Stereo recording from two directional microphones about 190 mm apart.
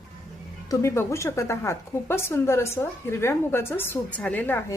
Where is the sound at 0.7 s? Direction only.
15° left (ahead or behind).